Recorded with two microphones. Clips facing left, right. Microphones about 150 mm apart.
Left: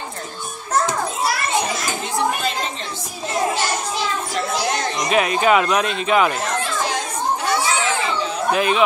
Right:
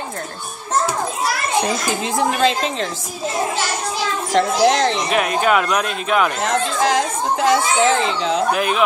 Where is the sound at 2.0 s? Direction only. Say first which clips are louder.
Right 5 dB; 90° right.